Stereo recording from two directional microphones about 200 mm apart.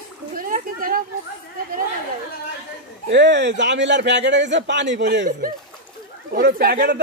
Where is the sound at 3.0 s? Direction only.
60° right (ahead or behind).